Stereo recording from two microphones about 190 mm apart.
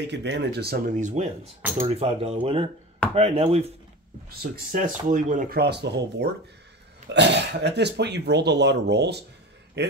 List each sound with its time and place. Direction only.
0.0 s speech: 65° right (ahead or behind); by 3.7 s 35° right (ahead or behind)
4.3 s speech: 50° right (ahead or behind)